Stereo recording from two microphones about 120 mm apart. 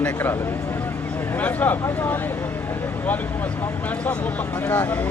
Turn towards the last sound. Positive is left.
turn(degrees=15)  # may be behind; listen again after turning